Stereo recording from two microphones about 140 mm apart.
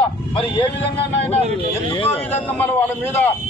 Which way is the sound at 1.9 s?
40° left (ahead or behind).